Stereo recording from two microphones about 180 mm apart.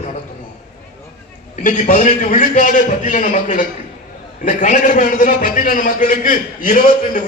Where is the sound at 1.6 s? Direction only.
45° left (ahead or behind).